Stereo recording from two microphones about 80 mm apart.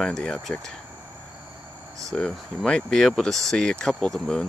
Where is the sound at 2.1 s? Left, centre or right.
Centre.